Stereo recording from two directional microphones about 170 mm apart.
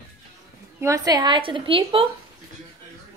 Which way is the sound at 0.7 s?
20° right (ahead or behind).